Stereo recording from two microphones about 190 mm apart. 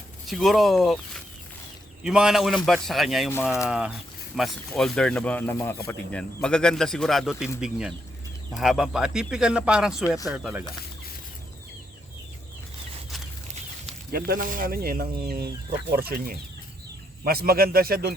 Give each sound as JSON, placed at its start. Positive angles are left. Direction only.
{"t": 0.3, "sound": "speech", "side_deg": 0}
{"t": 3.2, "sound": "speech", "side_deg": 10}
{"t": 3.7, "sound": "speech", "side_deg": -5}
{"t": 14.1, "sound": "speech", "side_deg": -50}